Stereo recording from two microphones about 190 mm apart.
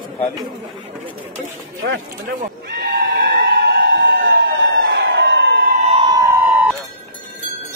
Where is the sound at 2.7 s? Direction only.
50° right (ahead or behind).